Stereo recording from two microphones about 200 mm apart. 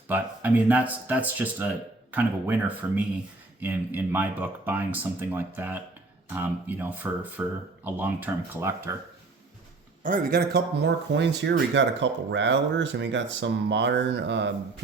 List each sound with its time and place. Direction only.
0.1 s speech: 5° right (ahead or behind)
10.0 s speech: 40° right (ahead or behind); by 14.5 s 60° right (ahead or behind)